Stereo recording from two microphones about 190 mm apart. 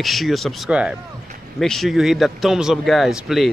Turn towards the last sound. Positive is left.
turn(degrees=0)  # may be behind; listen again after turning